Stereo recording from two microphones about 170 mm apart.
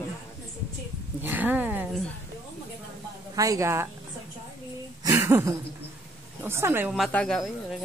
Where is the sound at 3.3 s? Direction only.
20° right (ahead or behind).